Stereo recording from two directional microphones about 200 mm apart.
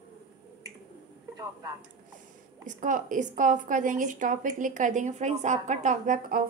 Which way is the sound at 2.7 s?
40° right (ahead or behind).